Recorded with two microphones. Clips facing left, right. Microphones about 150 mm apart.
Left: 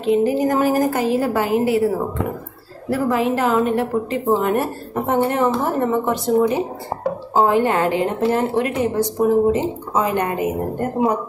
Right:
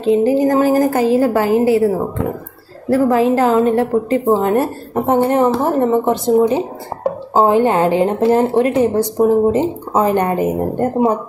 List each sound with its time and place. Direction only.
0.0 s a woman's voice: 30° right (ahead or behind)
2.9 s a woman's voice: 35° right (ahead or behind)